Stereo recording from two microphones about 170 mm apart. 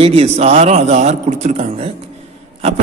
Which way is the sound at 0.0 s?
35° right (ahead or behind).